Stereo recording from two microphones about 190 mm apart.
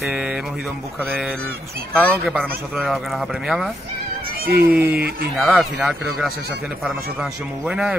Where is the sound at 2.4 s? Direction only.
Centre (ahead or behind).